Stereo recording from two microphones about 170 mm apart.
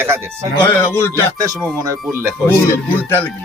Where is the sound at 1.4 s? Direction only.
20° right (ahead or behind).